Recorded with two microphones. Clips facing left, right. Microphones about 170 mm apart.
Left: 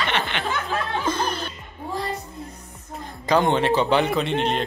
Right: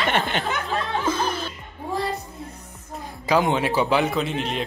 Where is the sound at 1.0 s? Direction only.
5° right (ahead or behind).